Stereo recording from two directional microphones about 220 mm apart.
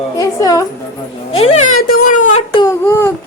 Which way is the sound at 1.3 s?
25° left (ahead or behind).